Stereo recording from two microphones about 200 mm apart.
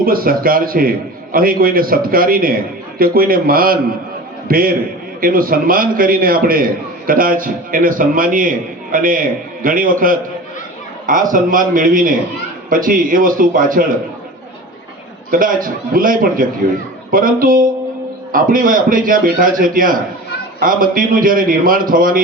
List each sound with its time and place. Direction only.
0.0 s a man's voice: 45° right (ahead or behind)
15.3 s a man's voice: 45° right (ahead or behind)